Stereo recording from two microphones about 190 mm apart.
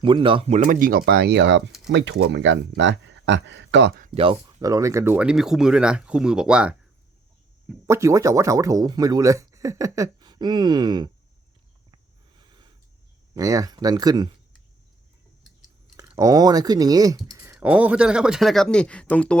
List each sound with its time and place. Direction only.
0.0 s speech: 25° right (ahead or behind); by 3.9 s 70° right (ahead or behind)
4.1 s speech: 30° right (ahead or behind)
11.9 s a sound: 25° right (ahead or behind)
13.3 s speech: 20° right (ahead or behind)
16.1 s speech: 20° right (ahead or behind); by 19.4 s 5° left (ahead or behind)